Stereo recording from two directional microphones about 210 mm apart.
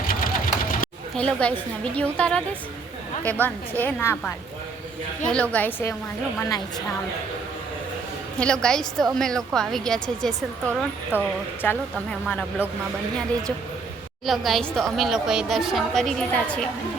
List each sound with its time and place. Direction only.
0.1 s sewing machine: 40° left (ahead or behind)
1.1 s a woman's voice: 5° left (ahead or behind)
8.4 s a woman's voice: 5° left (ahead or behind)
12.6 s speech: 5° right (ahead or behind)
14.3 s a woman's voice: centre (ahead or behind)